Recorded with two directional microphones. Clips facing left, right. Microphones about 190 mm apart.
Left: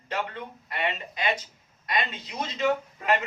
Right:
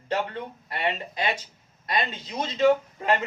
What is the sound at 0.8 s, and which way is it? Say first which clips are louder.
Speech: right 2 dB; 30° right (ahead or behind).